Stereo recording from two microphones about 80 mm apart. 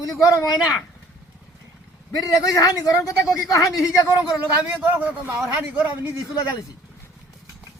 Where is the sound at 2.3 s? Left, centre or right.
Left.